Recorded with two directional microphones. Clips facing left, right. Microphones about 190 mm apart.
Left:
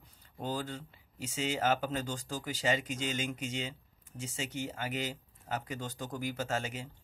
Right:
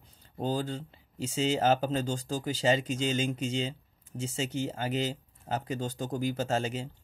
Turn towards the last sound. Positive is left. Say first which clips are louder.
# right 5 dB
turn(degrees=-30)  # may be behind; listen again after turning